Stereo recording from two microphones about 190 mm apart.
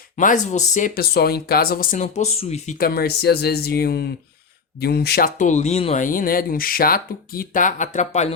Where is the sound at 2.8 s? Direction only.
50° left (ahead or behind).